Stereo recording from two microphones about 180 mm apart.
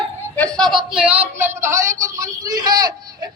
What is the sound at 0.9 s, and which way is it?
A man's voice, 5° right (ahead or behind).